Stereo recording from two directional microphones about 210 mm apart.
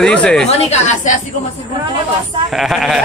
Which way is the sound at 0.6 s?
30° left (ahead or behind).